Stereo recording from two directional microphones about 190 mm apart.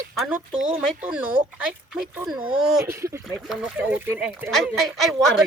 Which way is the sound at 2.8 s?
15° right (ahead or behind).